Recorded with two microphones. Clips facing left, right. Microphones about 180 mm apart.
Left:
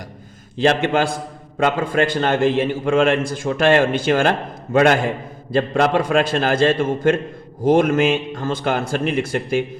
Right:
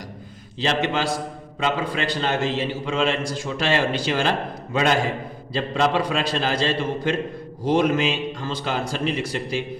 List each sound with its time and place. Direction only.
0.6 s a man's voice: 55° left (ahead or behind)